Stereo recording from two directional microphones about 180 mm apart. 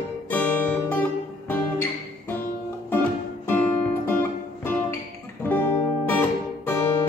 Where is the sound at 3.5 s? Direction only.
10° left (ahead or behind).